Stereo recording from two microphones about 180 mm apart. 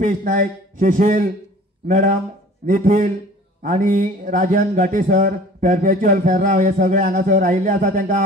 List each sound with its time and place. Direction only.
0.0 s speech: 50° right (ahead or behind)